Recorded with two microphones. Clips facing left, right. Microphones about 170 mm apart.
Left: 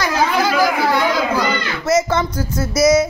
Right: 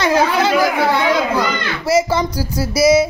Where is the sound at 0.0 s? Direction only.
25° right (ahead or behind).